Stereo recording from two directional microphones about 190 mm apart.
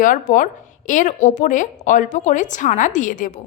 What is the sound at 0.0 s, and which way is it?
A woman's voice, 45° left (ahead or behind).